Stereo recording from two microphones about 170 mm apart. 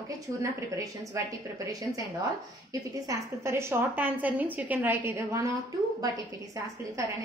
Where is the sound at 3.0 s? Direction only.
15° right (ahead or behind).